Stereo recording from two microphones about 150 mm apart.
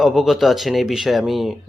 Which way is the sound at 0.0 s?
Centre (ahead or behind).